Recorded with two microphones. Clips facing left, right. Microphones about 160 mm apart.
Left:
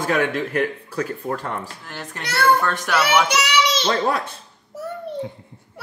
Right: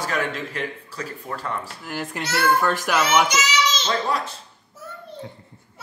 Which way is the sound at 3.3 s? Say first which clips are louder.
Left 3 dB; 65° left (ahead or behind).